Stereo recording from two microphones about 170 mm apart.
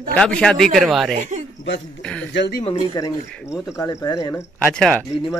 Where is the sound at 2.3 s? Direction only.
90° left.